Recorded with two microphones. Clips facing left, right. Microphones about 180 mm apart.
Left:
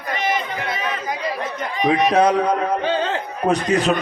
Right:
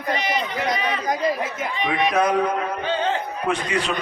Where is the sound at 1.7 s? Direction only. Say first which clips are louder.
Left 5 dB; 40° left (ahead or behind).